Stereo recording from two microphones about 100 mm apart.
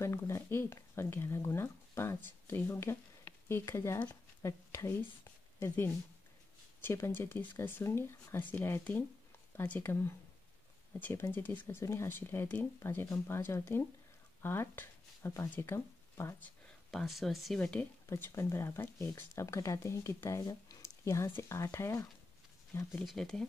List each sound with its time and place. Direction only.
0.0 s speech: 30° left (ahead or behind)
3.4 s a sound: 25° left (ahead or behind)
6.8 s speech: 25° left (ahead or behind)
14.4 s a sound: 20° left (ahead or behind)
15.5 s speech: 25° left (ahead or behind)
16.9 s speech: centre (ahead or behind)
17.6 s a woman's voice: 15° left (ahead or behind)
18.0 s speech: 30° left (ahead or behind)
20.6 s a sound: 30° left (ahead or behind)
21.4 s speech: 30° left (ahead or behind)
23.0 s speech: 5° left (ahead or behind)